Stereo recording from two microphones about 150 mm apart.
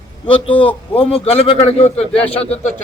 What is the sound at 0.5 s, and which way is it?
Speech, 10° left (ahead or behind).